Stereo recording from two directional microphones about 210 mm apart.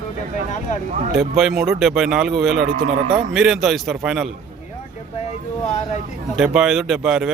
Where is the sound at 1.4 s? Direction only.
Centre (ahead or behind).